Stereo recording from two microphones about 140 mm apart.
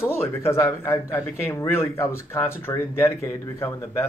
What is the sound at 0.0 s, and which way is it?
Speech, 15° left (ahead or behind).